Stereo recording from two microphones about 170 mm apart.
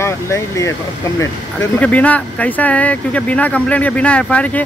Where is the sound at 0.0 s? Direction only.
15° left (ahead or behind).